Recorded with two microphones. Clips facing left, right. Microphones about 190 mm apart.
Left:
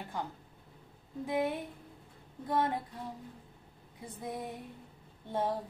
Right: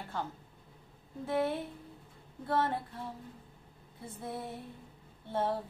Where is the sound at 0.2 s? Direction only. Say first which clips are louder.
Right 2 dB; 15° left (ahead or behind).